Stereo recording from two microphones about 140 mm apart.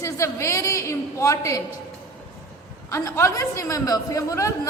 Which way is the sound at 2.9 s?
20° left (ahead or behind).